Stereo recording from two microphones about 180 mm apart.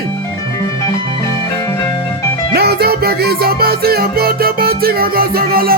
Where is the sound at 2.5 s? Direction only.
60° right (ahead or behind).